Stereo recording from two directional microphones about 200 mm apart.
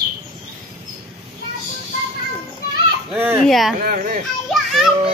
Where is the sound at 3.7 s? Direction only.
45° right (ahead or behind).